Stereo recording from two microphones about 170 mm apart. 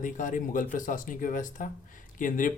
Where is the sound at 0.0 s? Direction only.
50° left (ahead or behind).